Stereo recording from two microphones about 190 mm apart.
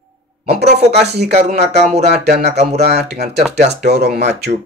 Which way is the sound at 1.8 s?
35° right (ahead or behind).